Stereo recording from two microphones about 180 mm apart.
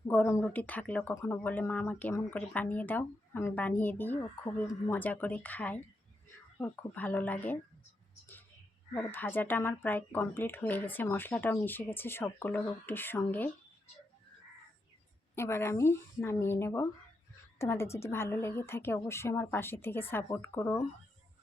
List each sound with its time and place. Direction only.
0.1 s speech: 10° left (ahead or behind)
9.0 s speech: 10° left (ahead or behind)
15.4 s speech: 15° left (ahead or behind)